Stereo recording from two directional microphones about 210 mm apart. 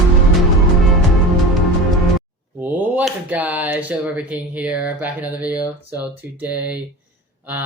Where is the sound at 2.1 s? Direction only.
10° right (ahead or behind).